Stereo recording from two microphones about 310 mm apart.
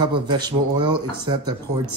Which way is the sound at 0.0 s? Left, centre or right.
Centre.